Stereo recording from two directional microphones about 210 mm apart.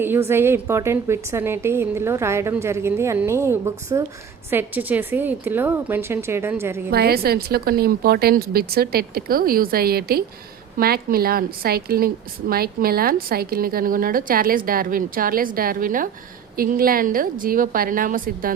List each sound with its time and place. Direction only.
0.0 s a woman's voice: 10° right (ahead or behind)
6.9 s a woman's voice: 50° right (ahead or behind)